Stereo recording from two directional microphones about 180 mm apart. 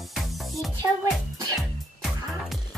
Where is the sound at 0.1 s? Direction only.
Centre (ahead or behind).